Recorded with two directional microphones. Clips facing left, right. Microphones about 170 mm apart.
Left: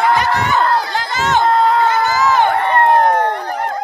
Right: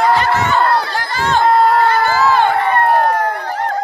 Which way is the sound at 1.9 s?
15° left (ahead or behind).